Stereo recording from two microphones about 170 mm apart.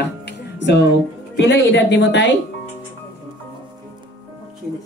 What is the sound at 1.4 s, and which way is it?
Speech, 90° left.